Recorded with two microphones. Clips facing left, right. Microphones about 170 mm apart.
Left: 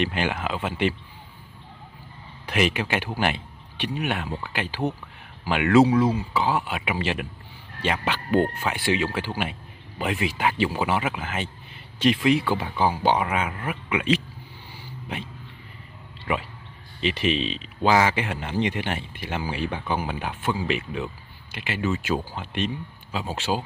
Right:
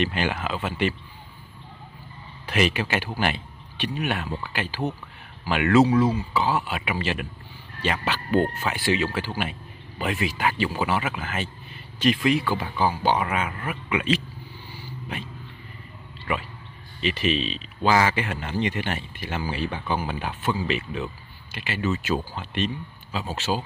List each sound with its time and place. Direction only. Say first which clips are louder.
0.0 s speech: even; 15° left (ahead or behind)
2.4 s speech: even; 15° left (ahead or behind)
17.0 s speech: left 1 dB; 20° left (ahead or behind)